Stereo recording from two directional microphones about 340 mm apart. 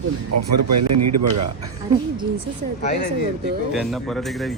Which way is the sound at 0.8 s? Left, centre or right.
Right.